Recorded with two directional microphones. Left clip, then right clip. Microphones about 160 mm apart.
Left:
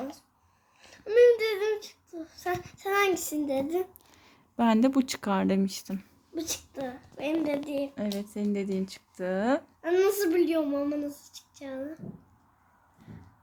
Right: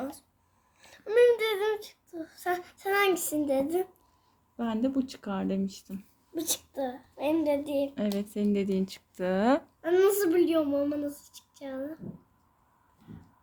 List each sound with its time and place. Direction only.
0.8 s a woman's voice: 10° right (ahead or behind)
4.5 s speech: 50° left (ahead or behind)
6.3 s a woman's voice: 20° right (ahead or behind)
9.8 s a woman's voice: 5° right (ahead or behind)